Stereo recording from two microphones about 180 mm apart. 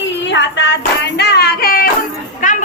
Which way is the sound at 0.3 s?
75° left (ahead or behind).